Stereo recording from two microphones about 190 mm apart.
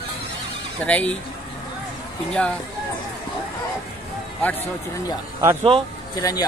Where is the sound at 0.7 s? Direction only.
5° left (ahead or behind).